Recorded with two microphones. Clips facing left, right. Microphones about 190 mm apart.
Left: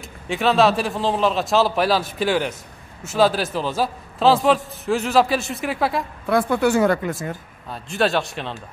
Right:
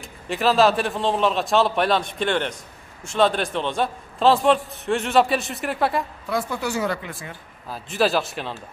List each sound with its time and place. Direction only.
0.0 s speech: centre (ahead or behind)
6.2 s speech: 60° left (ahead or behind)
7.7 s speech: centre (ahead or behind)